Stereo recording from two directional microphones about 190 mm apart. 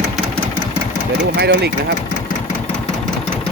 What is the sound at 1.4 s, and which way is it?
Speech, 60° right (ahead or behind).